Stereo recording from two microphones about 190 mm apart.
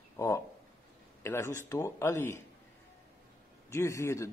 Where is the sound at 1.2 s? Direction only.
15° left (ahead or behind).